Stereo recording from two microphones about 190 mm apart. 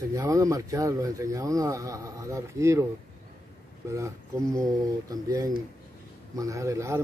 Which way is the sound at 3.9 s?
15° right (ahead or behind).